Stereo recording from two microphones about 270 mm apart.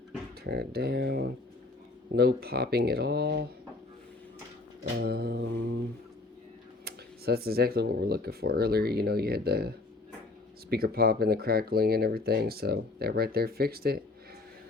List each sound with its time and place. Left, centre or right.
0.4 s speech: right
4.8 s speech: right
6.8 s speech: right